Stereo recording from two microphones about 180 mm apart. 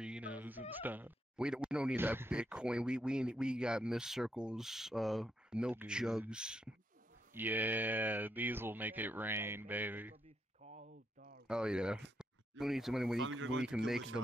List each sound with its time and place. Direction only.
0.0 s speech: 5° right (ahead or behind)
10.6 s a sound: 40° right (ahead or behind); by 11.4 s 60° right (ahead or behind)
11.4 s speech: 5° right (ahead or behind)
13.3 s speech: 90° right
13.7 s speech: centre (ahead or behind)